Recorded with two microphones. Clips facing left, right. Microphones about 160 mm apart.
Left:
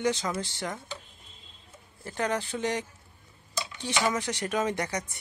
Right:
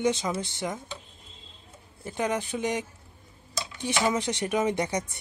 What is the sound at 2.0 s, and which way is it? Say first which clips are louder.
Speech: right 1 dB; 15° right (ahead or behind).